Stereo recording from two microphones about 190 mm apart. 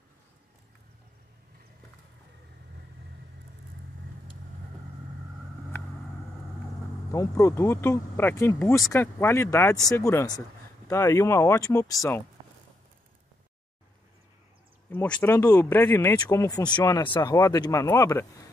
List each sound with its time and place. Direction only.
7.1 s speech: 15° left (ahead or behind)
14.9 s speech: 10° left (ahead or behind)